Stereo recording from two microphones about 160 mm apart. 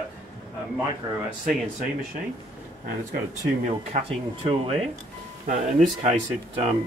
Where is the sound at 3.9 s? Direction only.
45° right (ahead or behind).